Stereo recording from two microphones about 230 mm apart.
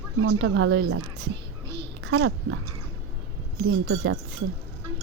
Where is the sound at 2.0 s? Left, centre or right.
Right.